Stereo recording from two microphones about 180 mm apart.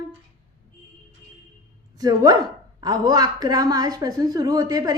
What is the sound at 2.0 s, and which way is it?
A woman's voice, 20° right (ahead or behind).